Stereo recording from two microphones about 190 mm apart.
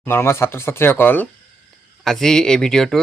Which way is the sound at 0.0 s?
10° left (ahead or behind).